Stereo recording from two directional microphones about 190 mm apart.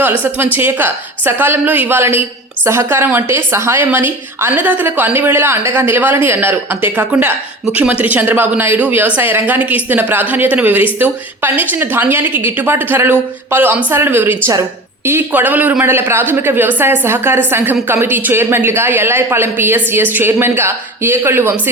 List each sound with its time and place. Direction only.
0.0 s a woman's voice: 10° right (ahead or behind)